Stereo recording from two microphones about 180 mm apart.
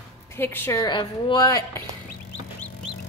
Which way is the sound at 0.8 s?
25° left (ahead or behind).